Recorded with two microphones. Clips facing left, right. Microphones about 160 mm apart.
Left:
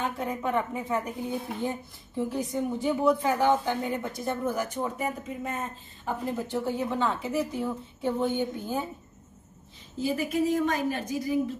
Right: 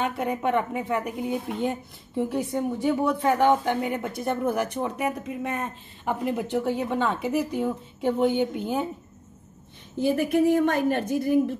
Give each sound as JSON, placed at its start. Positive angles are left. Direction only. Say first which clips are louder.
{"t": 0.0, "sound": "speech", "louder": "right 4 dB", "side_deg": -70}
{"t": 9.9, "sound": "a woman's voice", "louder": "right 5 dB", "side_deg": -60}